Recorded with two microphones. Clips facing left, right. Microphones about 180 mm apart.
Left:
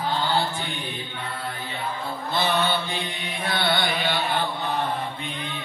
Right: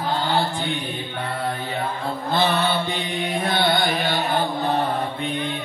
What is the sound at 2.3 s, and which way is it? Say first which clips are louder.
Music: right 3 dB; 60° right (ahead or behind).